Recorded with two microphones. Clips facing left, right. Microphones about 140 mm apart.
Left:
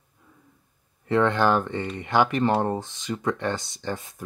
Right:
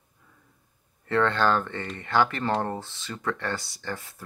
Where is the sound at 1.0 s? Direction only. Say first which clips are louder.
Left 2 dB; 15° left (ahead or behind).